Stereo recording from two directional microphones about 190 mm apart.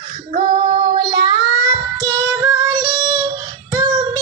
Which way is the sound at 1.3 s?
15° right (ahead or behind).